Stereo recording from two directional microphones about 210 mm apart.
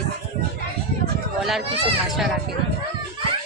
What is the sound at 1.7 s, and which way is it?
Speech, 25° right (ahead or behind).